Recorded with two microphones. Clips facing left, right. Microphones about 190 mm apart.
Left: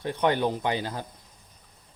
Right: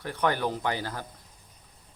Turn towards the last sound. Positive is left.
turn(degrees=20)  # may be behind; listen again after turning